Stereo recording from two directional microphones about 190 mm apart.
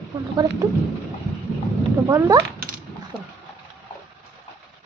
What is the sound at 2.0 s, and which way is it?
Speech, 15° right (ahead or behind).